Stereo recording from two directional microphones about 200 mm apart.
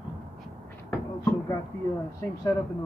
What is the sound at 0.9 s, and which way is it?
Beatboxing, 10° left (ahead or behind).